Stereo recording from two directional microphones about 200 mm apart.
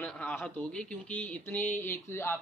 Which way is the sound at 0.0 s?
5° left (ahead or behind).